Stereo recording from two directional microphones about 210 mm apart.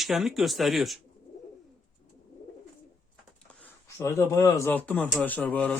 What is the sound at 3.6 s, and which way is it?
Speech, 15° left (ahead or behind).